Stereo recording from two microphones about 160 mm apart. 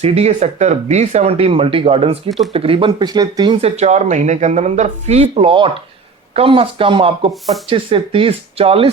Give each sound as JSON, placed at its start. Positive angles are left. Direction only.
{"t": 0.0, "sound": "speech", "side_deg": -40}